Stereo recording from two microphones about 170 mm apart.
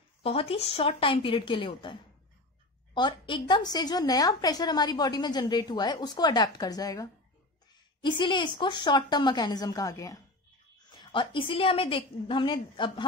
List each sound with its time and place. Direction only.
0.2 s a woman's voice: 35° left (ahead or behind)